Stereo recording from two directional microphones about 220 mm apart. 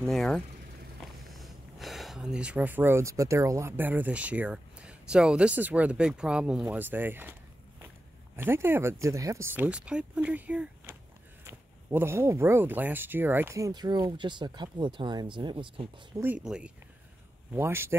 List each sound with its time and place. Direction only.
0.0 s speech: centre (ahead or behind)
8.4 s speech: 10° right (ahead or behind)
16.2 s speech: 5° right (ahead or behind)